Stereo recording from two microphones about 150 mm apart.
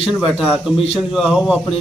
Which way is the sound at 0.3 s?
5° right (ahead or behind).